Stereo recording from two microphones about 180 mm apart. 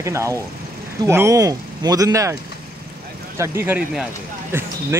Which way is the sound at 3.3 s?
15° right (ahead or behind).